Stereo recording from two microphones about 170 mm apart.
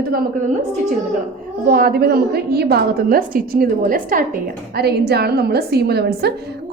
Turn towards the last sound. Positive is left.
turn(degrees=-70)  # may be behind; listen again after turning